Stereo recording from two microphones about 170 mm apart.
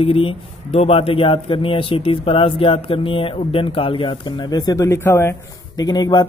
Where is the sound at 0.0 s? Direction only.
35° left (ahead or behind); by 5.3 s 15° left (ahead or behind).